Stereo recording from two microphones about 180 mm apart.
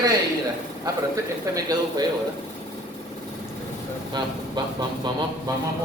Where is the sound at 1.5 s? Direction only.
20° right (ahead or behind).